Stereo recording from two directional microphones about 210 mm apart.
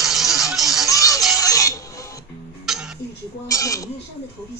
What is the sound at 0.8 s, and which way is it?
Music, 15° left (ahead or behind).